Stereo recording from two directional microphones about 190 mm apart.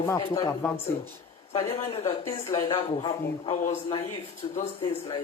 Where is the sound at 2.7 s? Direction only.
30° left (ahead or behind).